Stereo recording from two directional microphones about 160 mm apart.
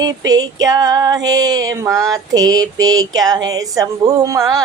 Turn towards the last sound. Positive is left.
turn(degrees=-20)  # may be behind; listen again after turning